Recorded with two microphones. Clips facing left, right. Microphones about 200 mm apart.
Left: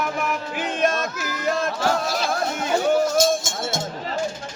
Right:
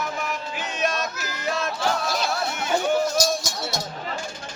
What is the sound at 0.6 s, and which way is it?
Music, 50° left (ahead or behind).